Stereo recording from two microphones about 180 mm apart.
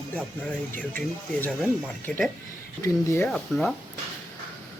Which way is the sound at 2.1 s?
Centre (ahead or behind).